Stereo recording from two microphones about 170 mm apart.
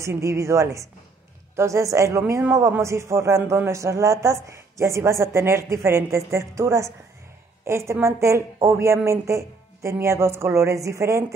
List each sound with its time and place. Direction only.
0.0 s a man's voice: 15° right (ahead or behind)